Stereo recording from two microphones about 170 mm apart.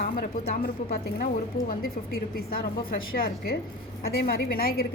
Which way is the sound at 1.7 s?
60° left (ahead or behind).